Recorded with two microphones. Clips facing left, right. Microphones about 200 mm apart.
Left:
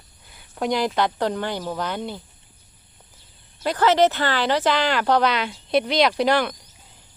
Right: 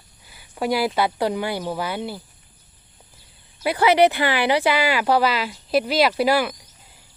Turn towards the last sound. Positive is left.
turn(degrees=-5)  # may be behind; listen again after turning